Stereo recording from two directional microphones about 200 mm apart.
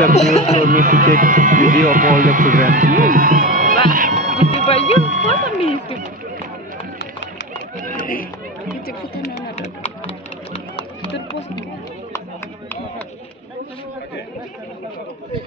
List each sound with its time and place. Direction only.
0.1 s speech: 35° left (ahead or behind)
0.6 s speech: 45° right (ahead or behind)
3.9 s music: 40° right (ahead or behind)
4.6 s music: 30° left (ahead or behind)
5.0 s a sound: 40° right (ahead or behind)
5.6 s a sound: 30° left (ahead or behind)
7.9 s run: 45° left (ahead or behind)
9.3 s a sound: 30° left (ahead or behind)
11.1 s music: 60° left (ahead or behind)